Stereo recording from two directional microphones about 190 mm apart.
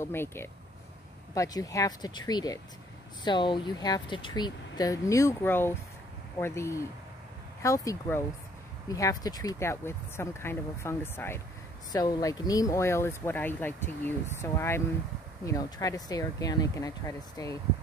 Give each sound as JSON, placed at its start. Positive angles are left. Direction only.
{"t": 0.0, "sound": "speech", "side_deg": 10}